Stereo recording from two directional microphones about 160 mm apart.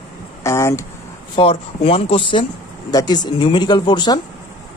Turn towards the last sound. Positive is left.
turn(degrees=30)  # may be behind; listen again after turning